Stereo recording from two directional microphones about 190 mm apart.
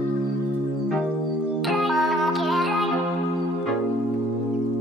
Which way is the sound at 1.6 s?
Centre (ahead or behind).